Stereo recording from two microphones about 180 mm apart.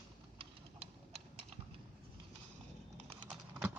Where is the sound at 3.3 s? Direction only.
5° right (ahead or behind).